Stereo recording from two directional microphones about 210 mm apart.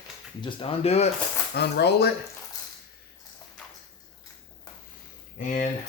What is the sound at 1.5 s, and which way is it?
Speech, 50° left (ahead or behind).